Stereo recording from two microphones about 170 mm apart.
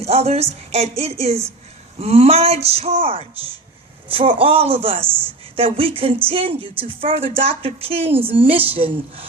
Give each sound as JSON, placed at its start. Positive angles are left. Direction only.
{"t": 0.0, "sound": "a man's voice", "side_deg": -40}
{"t": 5.0, "sound": "a woman's voice", "side_deg": -10}
{"t": 5.5, "sound": "a man's voice", "side_deg": -35}